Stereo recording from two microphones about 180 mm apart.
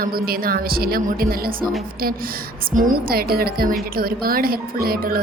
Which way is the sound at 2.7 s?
50° right (ahead or behind).